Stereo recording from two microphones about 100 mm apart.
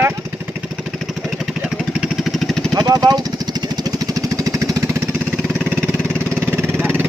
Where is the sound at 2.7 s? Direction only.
40° right (ahead or behind).